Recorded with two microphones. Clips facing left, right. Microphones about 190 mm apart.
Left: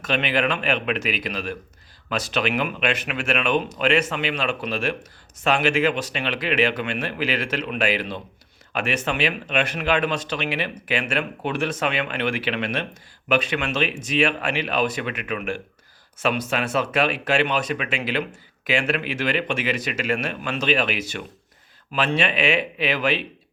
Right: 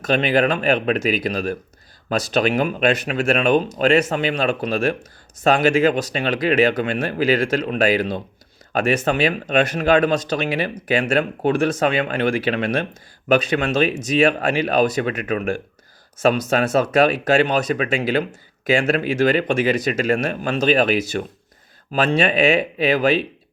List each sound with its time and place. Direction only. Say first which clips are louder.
0.0 s speech: right 5 dB; 40° right (ahead or behind)